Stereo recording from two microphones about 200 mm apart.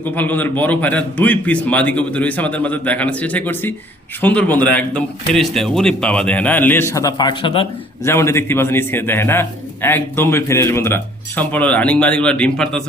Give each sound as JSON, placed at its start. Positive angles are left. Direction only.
{"t": 0.0, "sound": "a man's voice", "side_deg": 10}
{"t": 8.0, "sound": "a man's voice", "side_deg": 15}